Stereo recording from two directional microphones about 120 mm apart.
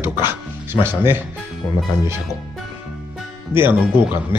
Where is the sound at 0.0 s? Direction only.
20° right (ahead or behind).